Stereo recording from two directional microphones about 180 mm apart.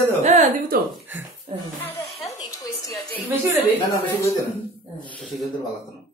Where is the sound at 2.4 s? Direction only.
20° left (ahead or behind).